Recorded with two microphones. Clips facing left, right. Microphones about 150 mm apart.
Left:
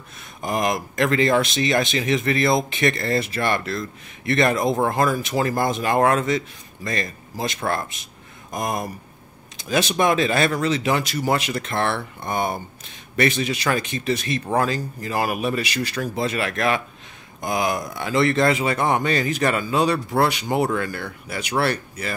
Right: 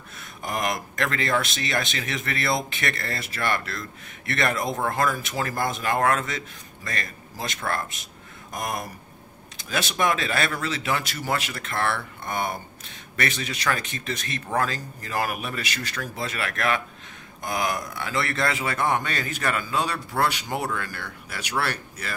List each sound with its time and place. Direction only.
0.5 s speech: 20° left (ahead or behind)